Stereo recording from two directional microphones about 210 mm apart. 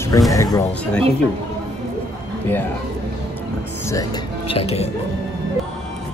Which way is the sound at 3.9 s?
20° left (ahead or behind).